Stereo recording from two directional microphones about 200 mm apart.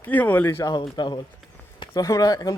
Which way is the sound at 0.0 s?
10° left (ahead or behind).